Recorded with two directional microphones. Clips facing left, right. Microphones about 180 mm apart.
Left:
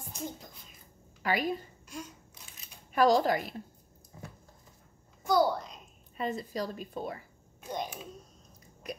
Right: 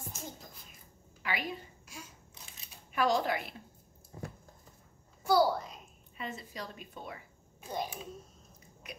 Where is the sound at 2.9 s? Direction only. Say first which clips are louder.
Left 5 dB; 40° left (ahead or behind).